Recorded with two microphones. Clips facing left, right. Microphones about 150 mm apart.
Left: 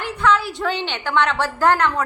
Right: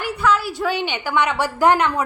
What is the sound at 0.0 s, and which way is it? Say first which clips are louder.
A woman's voice: even; 5° right (ahead or behind).